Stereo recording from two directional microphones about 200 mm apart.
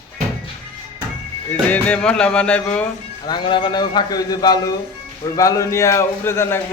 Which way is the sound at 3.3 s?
25° left (ahead or behind).